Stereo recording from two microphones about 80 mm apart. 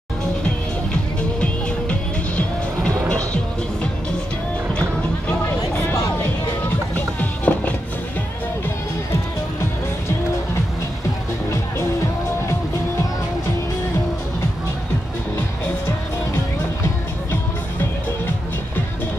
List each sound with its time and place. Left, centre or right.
1.4 s music: centre
7.2 s music: left